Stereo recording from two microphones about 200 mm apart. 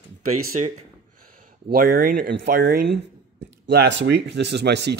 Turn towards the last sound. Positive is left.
turn(degrees=-55)  # may be behind; listen again after turning